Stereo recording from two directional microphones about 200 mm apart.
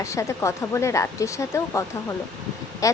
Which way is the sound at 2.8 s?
15° left (ahead or behind).